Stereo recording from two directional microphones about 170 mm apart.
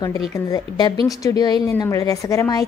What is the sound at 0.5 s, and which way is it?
A woman's voice, 25° left (ahead or behind).